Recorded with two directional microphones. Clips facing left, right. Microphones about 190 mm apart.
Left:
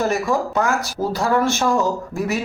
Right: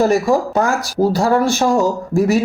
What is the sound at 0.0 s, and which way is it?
Speech, 35° right (ahead or behind).